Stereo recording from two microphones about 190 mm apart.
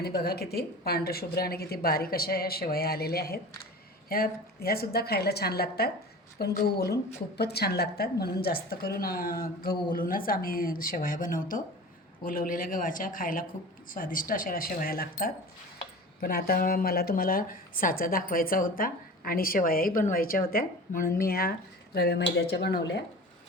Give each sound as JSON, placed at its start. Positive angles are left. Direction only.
{"t": 0.0, "sound": "a woman's voice", "side_deg": 55}